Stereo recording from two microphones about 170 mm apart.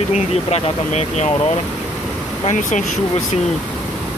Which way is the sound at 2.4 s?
45° left (ahead or behind).